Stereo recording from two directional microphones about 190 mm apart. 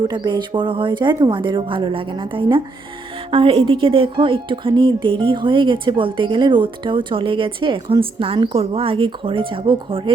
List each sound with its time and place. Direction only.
0.1 s a woman's voice: 25° right (ahead or behind)